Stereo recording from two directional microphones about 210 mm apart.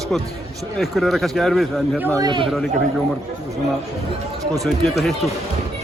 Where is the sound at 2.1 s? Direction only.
20° right (ahead or behind).